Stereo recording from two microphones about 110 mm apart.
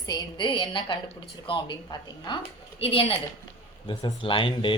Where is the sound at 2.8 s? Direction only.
60° left (ahead or behind).